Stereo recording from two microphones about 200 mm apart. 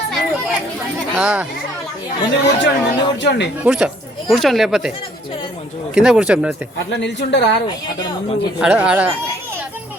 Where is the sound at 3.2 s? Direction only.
60° left (ahead or behind).